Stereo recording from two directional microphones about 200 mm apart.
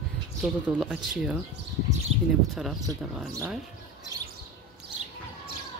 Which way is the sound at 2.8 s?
15° right (ahead or behind).